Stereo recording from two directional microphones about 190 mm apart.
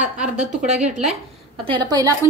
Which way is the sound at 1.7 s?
25° right (ahead or behind).